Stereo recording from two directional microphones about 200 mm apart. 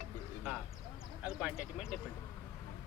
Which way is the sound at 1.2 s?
5° right (ahead or behind).